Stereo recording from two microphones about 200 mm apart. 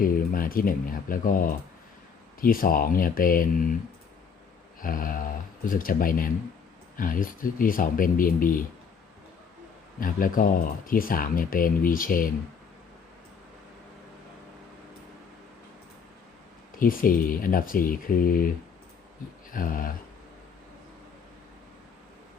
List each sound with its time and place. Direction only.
0.0 s speech: 45° left (ahead or behind)
4.8 s speech: 45° left (ahead or behind)
10.0 s speech: 45° left (ahead or behind)
16.7 s speech: 45° left (ahead or behind)